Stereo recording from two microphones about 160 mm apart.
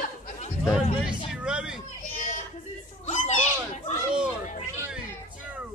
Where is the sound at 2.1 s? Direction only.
50° left (ahead or behind).